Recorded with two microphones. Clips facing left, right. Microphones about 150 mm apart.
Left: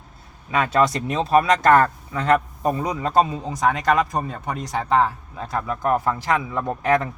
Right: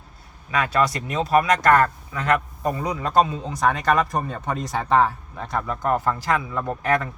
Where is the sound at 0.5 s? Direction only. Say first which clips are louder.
Left 2 dB; 25° left (ahead or behind).